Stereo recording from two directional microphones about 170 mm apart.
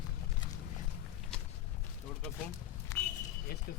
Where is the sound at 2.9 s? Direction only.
20° left (ahead or behind).